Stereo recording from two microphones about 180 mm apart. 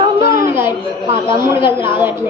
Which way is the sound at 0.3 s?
15° right (ahead or behind).